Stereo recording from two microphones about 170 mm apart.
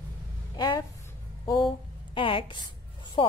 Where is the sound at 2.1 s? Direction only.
30° left (ahead or behind).